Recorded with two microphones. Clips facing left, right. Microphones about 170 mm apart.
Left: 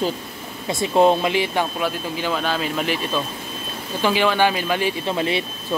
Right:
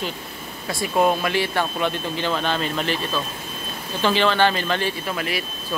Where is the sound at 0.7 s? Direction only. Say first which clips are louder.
Left 4 dB; 25° left (ahead or behind).